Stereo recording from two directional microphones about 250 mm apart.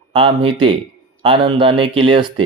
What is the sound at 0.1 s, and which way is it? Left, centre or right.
Speech, right.